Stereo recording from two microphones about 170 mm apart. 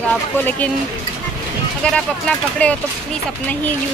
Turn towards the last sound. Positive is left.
turn(degrees=10)  # may be behind; listen again after turning